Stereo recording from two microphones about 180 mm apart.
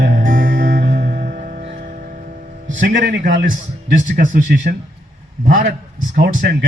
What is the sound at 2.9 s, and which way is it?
Speech, 90° right.